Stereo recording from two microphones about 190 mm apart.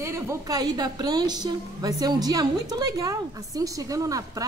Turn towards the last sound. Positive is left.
turn(degrees=-15)  # may be behind; listen again after turning